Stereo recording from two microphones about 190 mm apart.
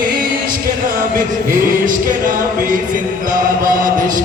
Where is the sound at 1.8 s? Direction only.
45° right (ahead or behind).